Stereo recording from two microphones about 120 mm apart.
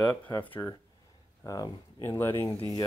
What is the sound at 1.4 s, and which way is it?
Speech, 30° left (ahead or behind).